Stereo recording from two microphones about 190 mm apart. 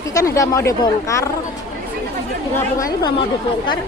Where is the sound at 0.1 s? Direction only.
15° left (ahead or behind).